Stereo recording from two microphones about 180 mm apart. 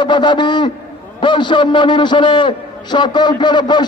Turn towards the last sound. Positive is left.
turn(degrees=25)  # may be behind; listen again after turning